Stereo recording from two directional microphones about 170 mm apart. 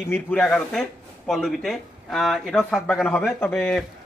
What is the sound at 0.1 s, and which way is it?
Speech, 5° left (ahead or behind).